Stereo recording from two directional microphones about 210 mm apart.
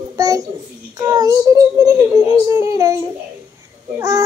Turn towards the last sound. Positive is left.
turn(degrees=-15)  # may be behind; listen again after turning